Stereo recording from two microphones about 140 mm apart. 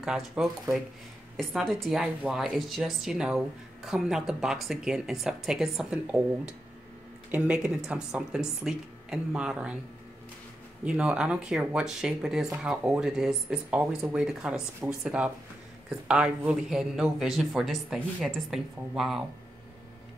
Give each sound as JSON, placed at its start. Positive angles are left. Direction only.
{"t": 0.0, "sound": "a woman's voice", "side_deg": -5}
{"t": 10.8, "sound": "a woman's voice", "side_deg": -10}